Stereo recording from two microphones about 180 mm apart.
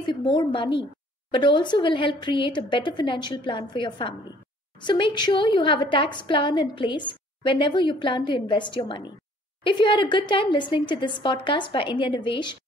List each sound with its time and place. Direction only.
0.0 s a woman's voice: 25° left (ahead or behind)